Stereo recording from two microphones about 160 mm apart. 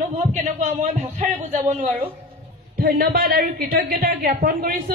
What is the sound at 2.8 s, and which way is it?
A woman's voice, 70° right (ahead or behind).